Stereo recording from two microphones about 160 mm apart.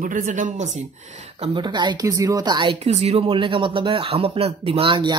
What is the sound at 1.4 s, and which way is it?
Speech, 30° right (ahead or behind).